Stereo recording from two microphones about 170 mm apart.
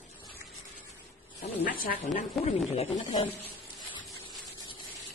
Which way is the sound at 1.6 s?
60° left (ahead or behind).